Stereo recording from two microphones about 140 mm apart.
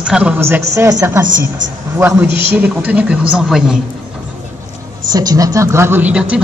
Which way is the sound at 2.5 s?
10° right (ahead or behind).